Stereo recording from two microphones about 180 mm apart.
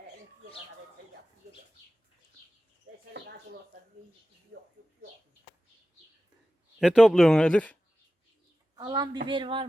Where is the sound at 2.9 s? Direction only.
90° right.